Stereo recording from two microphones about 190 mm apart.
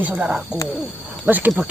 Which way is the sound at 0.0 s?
5° right (ahead or behind).